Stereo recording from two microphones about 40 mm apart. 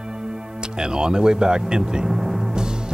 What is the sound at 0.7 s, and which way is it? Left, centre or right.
Speech, centre.